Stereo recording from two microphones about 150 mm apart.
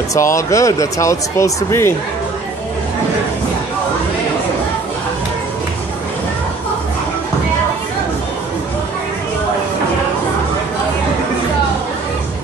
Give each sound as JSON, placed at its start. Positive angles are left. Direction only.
{"t": 0.1, "sound": "speech", "side_deg": 20}